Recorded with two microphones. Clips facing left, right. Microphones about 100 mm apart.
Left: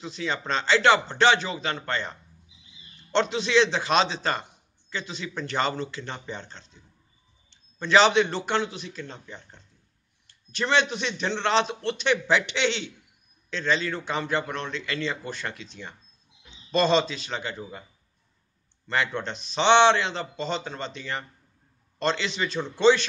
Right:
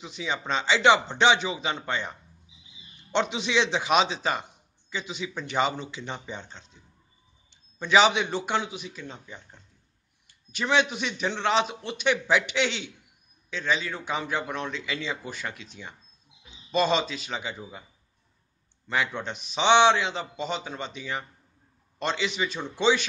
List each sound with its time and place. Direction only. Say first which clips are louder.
0.0 s a man's voice: left 2 dB; 10° right (ahead or behind)
7.8 s a man's voice: left 2 dB; 10° right (ahead or behind)
18.9 s a man's voice: left 1 dB; 10° right (ahead or behind)